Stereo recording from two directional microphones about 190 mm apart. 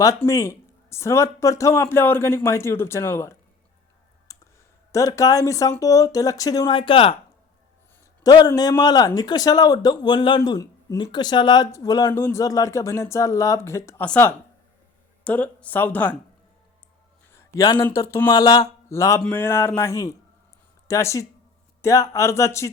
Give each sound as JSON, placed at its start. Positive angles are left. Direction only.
{"t": 0.2, "sound": "speech", "side_deg": 15}
{"t": 4.3, "sound": "clicking", "side_deg": 20}
{"t": 4.9, "sound": "speech", "side_deg": 15}
{"t": 8.2, "sound": "a man's voice", "side_deg": 20}
{"t": 17.3, "sound": "a sound", "side_deg": 15}
{"t": 17.8, "sound": "speech", "side_deg": 15}